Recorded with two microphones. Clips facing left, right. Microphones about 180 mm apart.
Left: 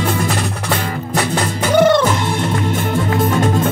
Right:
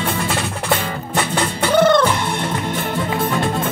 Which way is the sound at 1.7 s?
10° left (ahead or behind).